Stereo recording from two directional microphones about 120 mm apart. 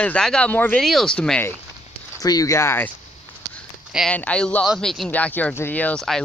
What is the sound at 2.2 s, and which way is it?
Speech, 30° left (ahead or behind).